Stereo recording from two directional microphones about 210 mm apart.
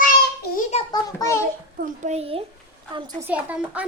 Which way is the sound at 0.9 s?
20° left (ahead or behind).